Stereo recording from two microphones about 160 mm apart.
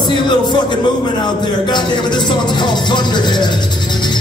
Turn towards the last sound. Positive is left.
turn(degrees=30)  # may be behind; listen again after turning